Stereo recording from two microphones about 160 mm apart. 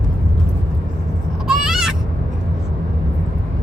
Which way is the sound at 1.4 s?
5° right (ahead or behind).